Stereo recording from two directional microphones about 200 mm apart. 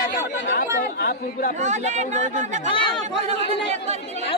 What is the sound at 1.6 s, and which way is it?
Speech, 35° right (ahead or behind).